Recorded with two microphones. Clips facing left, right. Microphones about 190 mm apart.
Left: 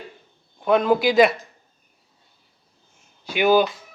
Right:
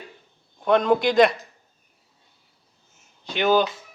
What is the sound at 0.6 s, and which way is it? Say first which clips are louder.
Speech: left 1 dB; 5° left (ahead or behind).